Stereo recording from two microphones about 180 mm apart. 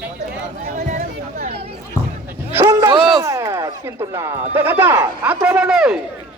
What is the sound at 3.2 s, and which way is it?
A man's voice, 15° right (ahead or behind).